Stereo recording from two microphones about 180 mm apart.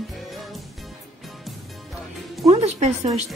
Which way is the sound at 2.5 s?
35° right (ahead or behind).